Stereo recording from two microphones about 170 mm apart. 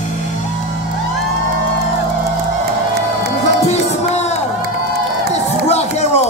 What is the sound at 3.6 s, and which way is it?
Music, 40° left (ahead or behind).